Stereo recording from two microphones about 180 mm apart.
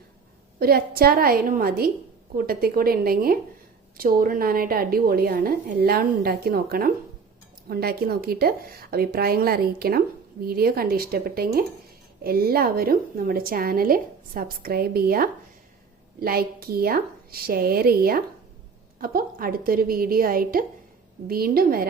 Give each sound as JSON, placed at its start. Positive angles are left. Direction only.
{"t": 0.6, "sound": "a woman's voice", "side_deg": -55}